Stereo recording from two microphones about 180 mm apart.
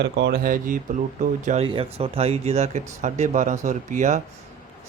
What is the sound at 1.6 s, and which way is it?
Speech, 30° right (ahead or behind).